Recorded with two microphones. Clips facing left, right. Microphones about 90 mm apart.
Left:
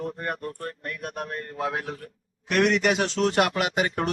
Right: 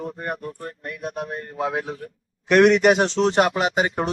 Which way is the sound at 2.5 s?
45° right (ahead or behind).